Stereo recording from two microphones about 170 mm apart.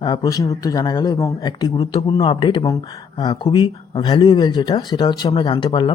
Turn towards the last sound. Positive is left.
turn(degrees=30)  # may be behind; listen again after turning